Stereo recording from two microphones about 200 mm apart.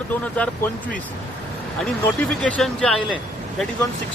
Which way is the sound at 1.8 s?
5° left (ahead or behind).